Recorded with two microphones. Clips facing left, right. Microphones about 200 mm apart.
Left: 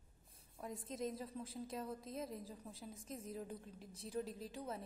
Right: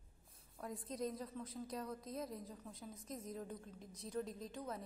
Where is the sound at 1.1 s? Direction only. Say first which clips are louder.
Even; 30° left (ahead or behind).